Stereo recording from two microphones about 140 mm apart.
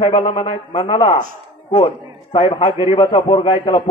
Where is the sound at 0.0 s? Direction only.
45° left (ahead or behind).